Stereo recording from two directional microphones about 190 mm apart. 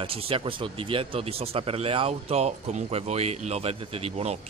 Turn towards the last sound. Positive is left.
turn(degrees=-35)  # may be behind; listen again after turning